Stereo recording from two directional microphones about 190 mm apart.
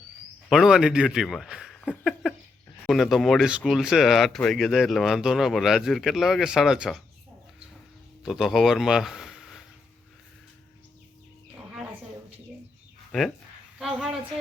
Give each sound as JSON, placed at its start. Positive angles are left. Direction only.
{"t": 0.5, "sound": "speech", "side_deg": 0}
{"t": 8.2, "sound": "speech", "side_deg": 0}
{"t": 13.1, "sound": "a sound", "side_deg": 0}